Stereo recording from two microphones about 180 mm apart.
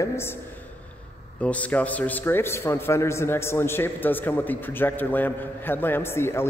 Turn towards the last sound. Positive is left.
turn(degrees=15)  # may be behind; listen again after turning